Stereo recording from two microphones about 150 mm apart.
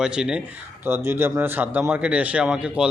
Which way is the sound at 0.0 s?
5° right (ahead or behind).